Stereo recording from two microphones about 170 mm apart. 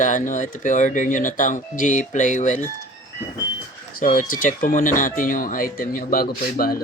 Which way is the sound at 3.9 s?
55° left (ahead or behind).